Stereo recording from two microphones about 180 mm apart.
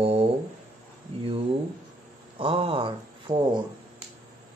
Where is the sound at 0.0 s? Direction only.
35° right (ahead or behind).